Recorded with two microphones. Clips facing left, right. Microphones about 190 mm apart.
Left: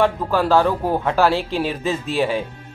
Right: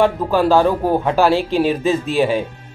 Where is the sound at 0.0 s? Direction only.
15° right (ahead or behind).